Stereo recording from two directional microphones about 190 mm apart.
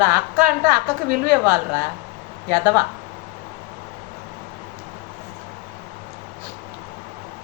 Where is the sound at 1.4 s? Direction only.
15° right (ahead or behind).